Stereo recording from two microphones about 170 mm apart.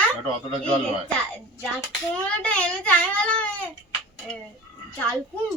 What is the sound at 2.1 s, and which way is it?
Speech, 5° left (ahead or behind).